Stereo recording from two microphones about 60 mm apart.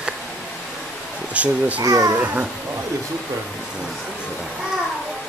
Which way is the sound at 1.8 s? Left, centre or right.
Right.